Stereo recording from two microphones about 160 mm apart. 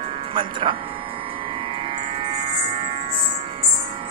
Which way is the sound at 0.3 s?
30° right (ahead or behind).